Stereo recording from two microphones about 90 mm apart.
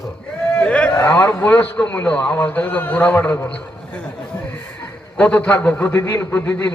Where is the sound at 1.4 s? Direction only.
15° left (ahead or behind).